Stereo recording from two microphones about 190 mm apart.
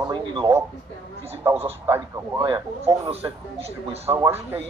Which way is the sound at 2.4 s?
20° right (ahead or behind).